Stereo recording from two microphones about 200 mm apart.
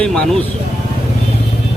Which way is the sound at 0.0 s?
5° left (ahead or behind).